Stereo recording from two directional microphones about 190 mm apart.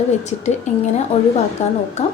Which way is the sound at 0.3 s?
35° left (ahead or behind).